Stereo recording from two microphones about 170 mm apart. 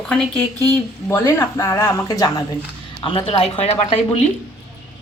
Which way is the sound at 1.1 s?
15° left (ahead or behind).